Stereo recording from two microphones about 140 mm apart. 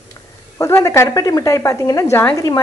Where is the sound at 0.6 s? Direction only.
20° left (ahead or behind).